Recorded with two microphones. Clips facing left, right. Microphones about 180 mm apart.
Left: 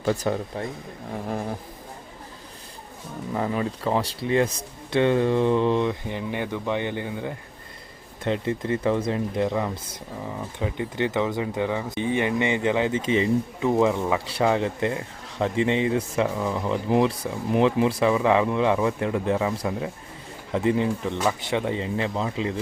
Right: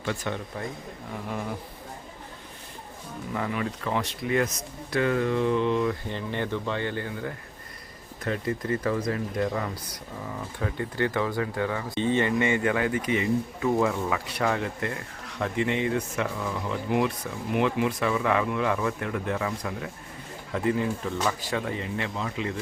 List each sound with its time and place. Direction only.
0.0 s speech: 35° left (ahead or behind)
3.3 s speech: 30° left (ahead or behind)
5.9 s speech: 15° left (ahead or behind); by 22.5 s 30° left (ahead or behind)